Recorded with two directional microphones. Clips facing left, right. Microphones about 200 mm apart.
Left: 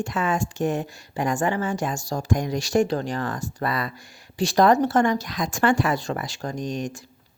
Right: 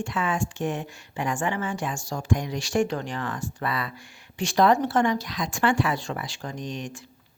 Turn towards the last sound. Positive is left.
turn(degrees=40)  # may be behind; listen again after turning